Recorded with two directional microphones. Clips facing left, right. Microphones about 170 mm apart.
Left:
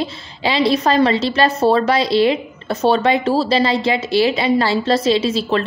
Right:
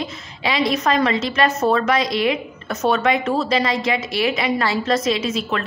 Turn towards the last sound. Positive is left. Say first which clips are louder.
# left 5 dB
turn(degrees=30)  # may be behind; listen again after turning